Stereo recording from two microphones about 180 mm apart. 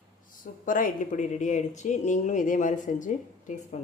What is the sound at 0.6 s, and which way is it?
Speech, 45° left (ahead or behind).